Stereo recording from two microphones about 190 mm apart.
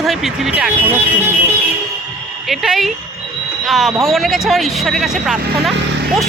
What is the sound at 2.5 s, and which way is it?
Speech, centre (ahead or behind).